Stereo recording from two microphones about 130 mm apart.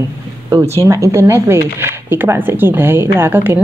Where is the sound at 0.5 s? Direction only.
20° right (ahead or behind).